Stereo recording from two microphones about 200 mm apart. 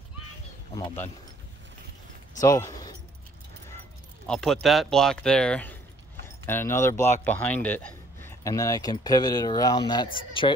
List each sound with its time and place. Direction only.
2.4 s speech: 15° left (ahead or behind)
4.3 s speech: centre (ahead or behind); by 10.5 s 25° left (ahead or behind)